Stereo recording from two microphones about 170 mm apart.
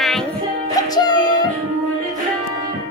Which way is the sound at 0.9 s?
25° left (ahead or behind).